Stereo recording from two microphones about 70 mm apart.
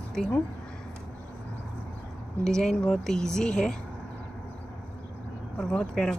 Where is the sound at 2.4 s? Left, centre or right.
Centre.